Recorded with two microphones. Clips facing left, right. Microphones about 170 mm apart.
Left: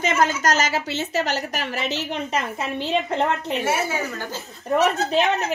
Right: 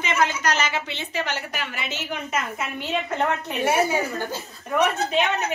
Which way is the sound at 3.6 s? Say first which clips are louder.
Right 5 dB; 15° right (ahead or behind).